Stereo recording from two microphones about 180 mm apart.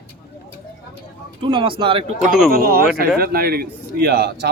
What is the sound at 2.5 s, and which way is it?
A man's voice, 55° right (ahead or behind).